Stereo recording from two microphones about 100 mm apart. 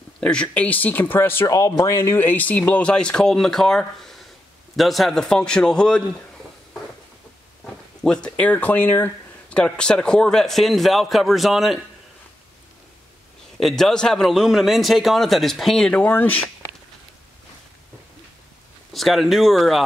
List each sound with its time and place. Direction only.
0.2 s speech: 10° left (ahead or behind)
1.5 s speech: 35° left (ahead or behind); by 6.2 s 10° left (ahead or behind)
8.0 s speech: 10° left (ahead or behind)
9.5 s speech: 10° left (ahead or behind)
13.6 s speech: 5° left (ahead or behind)
15.9 s speech: 15° left (ahead or behind)
18.9 s speech: centre (ahead or behind)